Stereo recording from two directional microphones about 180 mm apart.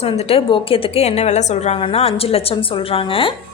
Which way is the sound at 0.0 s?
35° left (ahead or behind).